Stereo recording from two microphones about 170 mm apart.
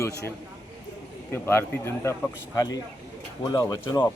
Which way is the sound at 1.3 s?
15° left (ahead or behind).